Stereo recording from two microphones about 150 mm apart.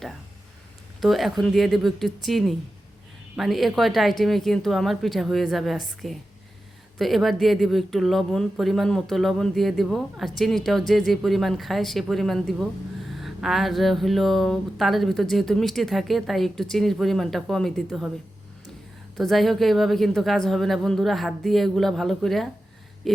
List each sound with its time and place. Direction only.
1.0 s speech: centre (ahead or behind)
19.1 s speech: centre (ahead or behind)